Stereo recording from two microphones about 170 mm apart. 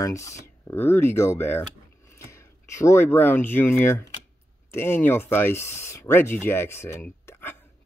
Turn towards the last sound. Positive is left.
turn(degrees=10)  # may be behind; listen again after turning